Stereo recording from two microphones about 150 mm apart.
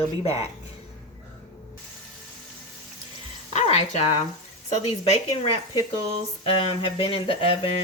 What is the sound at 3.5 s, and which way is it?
Speech, 45° left (ahead or behind).